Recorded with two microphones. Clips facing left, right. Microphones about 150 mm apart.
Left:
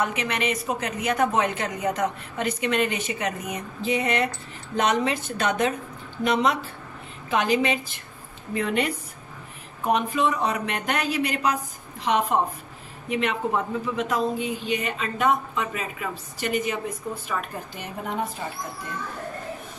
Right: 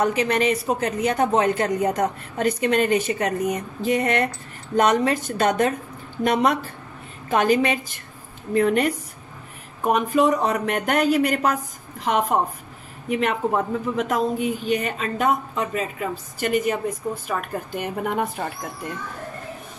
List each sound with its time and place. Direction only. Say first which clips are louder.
0.0 s a woman's voice: right 6 dB; 35° right (ahead or behind); by 18.5 s 60° right (ahead or behind)